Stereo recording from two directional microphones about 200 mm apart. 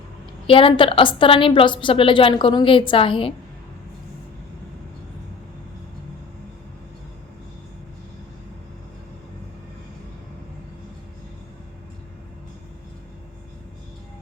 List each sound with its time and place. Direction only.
0.4 s a woman's voice: 25° left (ahead or behind)